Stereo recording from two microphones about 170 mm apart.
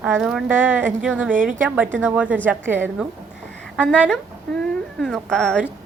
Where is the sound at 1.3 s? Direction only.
50° right (ahead or behind).